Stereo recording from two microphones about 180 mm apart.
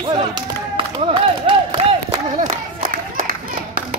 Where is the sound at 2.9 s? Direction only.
50° right (ahead or behind).